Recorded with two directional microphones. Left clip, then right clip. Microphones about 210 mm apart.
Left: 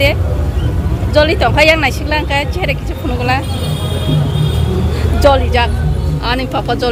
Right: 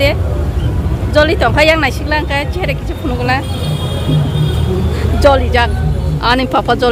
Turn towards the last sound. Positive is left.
turn(degrees=-20)  # may be behind; listen again after turning